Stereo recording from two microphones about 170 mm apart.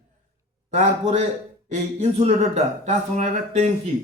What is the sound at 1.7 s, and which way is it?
A man's voice, 40° right (ahead or behind).